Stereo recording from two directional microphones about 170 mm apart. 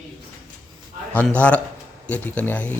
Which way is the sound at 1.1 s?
10° left (ahead or behind).